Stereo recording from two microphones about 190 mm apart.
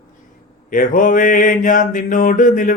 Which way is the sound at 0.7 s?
45° left (ahead or behind).